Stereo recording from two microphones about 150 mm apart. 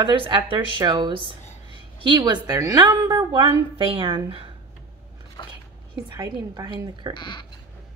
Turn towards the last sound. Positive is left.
turn(degrees=30)  # may be behind; listen again after turning